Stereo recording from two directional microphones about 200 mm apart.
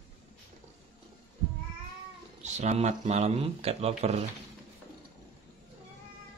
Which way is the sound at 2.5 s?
35° right (ahead or behind).